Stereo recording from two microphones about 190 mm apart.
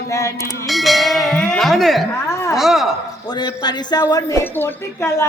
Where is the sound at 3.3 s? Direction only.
20° left (ahead or behind).